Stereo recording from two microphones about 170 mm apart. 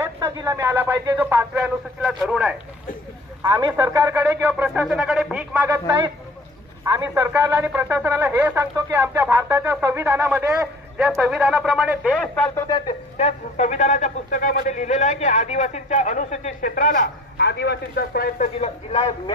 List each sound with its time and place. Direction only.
0.0 s speech: 15° right (ahead or behind)
3.5 s speech: 15° right (ahead or behind)
5.6 s speech: 15° right (ahead or behind)
12.1 s speech: 5° left (ahead or behind)
12.6 s speech: 25° left (ahead or behind)
13.6 s a man's voice: 45° left (ahead or behind); by 18.5 s 60° left (ahead or behind)
18.6 s a man's voice: 35° left (ahead or behind)